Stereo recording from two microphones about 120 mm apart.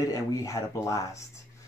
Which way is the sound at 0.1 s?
25° left (ahead or behind).